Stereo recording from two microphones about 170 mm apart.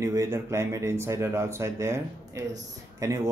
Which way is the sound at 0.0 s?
20° right (ahead or behind).